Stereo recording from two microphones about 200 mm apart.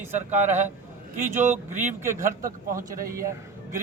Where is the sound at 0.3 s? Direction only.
35° right (ahead or behind).